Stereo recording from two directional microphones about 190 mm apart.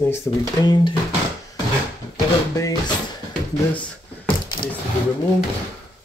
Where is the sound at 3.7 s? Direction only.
5° left (ahead or behind).